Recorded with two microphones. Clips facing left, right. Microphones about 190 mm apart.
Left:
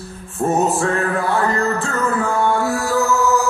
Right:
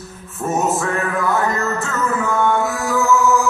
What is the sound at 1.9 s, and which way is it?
Music, 35° left (ahead or behind).